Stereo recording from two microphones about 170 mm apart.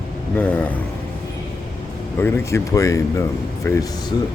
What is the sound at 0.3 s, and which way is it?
Speech, 10° left (ahead or behind).